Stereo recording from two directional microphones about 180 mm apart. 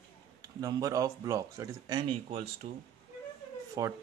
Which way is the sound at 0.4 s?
20° right (ahead or behind).